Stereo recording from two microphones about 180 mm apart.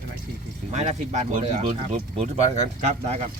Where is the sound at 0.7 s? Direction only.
40° right (ahead or behind).